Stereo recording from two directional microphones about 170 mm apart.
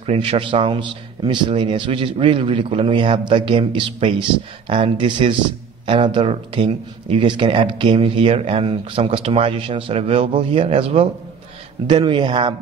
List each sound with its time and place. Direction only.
0.0 s a man's voice: 35° right (ahead or behind)